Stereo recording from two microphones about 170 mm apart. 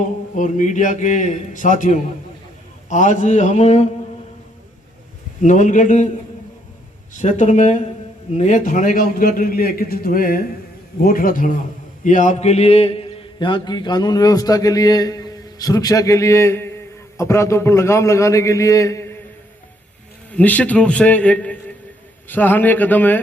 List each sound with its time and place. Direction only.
0.0 s a man's voice: 50° left (ahead or behind)
5.4 s a man's voice: 50° left (ahead or behind)
7.2 s a man's voice: 45° left (ahead or behind); by 19.1 s 15° left (ahead or behind)
20.3 s a man's voice: 10° left (ahead or behind)